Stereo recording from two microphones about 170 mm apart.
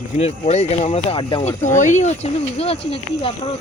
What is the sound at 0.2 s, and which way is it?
Speech, 40° left (ahead or behind).